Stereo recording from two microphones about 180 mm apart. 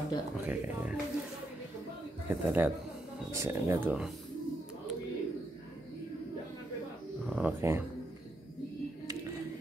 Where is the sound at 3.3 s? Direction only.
15° right (ahead or behind).